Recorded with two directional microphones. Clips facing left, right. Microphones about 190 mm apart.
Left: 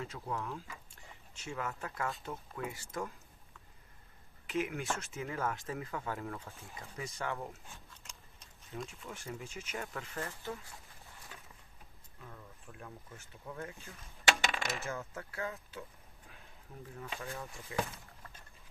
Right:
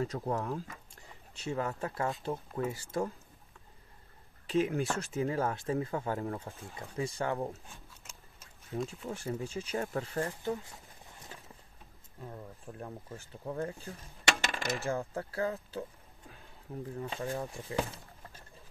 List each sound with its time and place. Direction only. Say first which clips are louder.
0.0 s speech: right 7 dB; 40° right (ahead or behind)
4.5 s speech: right 6 dB; 35° right (ahead or behind)
7.9 s vehicle: right 1 dB; 5° right (ahead or behind)
8.7 s speech: right 7 dB; 35° right (ahead or behind)
12.2 s speech: right 8 dB; 35° right (ahead or behind)
16.8 s speech: right 7 dB; 35° right (ahead or behind)